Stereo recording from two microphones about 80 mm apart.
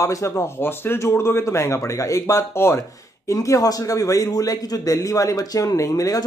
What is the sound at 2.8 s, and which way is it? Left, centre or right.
A man's voice, left.